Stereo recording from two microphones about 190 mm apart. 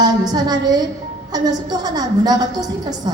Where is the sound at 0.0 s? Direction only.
20° right (ahead or behind).